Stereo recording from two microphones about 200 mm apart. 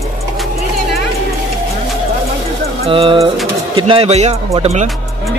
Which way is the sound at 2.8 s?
25° right (ahead or behind).